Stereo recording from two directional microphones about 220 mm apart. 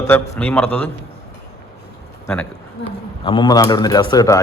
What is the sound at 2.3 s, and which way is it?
Speech, 5° left (ahead or behind).